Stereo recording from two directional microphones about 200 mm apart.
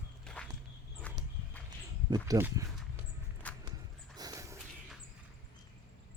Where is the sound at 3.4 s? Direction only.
5° left (ahead or behind).